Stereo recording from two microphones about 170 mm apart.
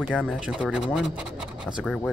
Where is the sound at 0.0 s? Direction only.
Centre (ahead or behind).